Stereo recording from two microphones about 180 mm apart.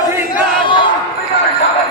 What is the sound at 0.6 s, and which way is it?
Crowd, 25° left (ahead or behind).